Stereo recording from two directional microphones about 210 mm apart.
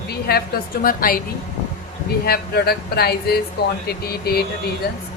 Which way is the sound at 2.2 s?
50° left (ahead or behind).